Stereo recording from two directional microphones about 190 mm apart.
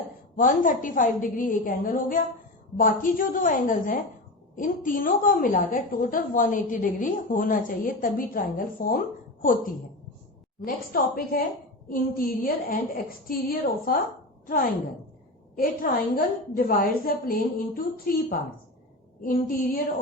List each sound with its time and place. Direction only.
0.3 s a woman's voice: 45° left (ahead or behind)